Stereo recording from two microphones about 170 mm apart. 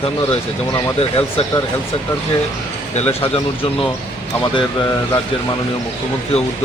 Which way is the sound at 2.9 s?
35° left (ahead or behind).